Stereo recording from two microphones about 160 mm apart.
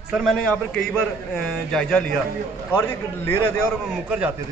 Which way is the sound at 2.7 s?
15° left (ahead or behind).